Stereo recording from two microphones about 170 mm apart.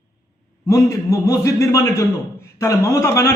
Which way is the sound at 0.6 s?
20° left (ahead or behind).